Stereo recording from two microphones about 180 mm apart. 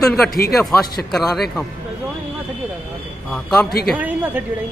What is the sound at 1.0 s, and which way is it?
Speech, centre (ahead or behind).